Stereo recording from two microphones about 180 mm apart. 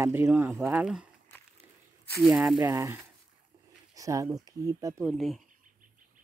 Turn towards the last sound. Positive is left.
turn(degrees=0)  # may be behind; listen again after turning